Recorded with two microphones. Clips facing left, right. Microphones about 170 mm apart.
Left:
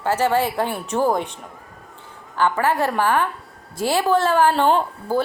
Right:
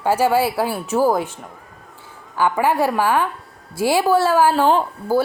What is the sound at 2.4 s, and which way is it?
Speech, 10° right (ahead or behind).